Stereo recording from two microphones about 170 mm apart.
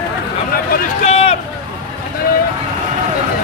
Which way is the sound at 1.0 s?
40° left (ahead or behind).